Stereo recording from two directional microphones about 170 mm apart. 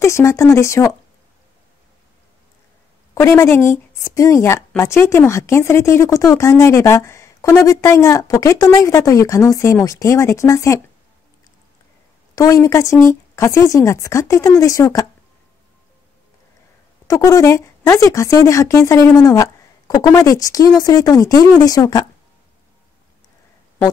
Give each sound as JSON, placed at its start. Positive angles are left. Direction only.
{"t": 0.0, "sound": "speech", "side_deg": 15}
{"t": 3.2, "sound": "speech", "side_deg": 15}
{"t": 12.4, "sound": "speech", "side_deg": 20}
{"t": 17.1, "sound": "speech", "side_deg": 20}